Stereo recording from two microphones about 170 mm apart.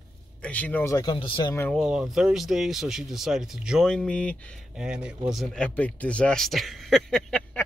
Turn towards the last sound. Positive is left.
turn(degrees=5)  # may be behind; listen again after turning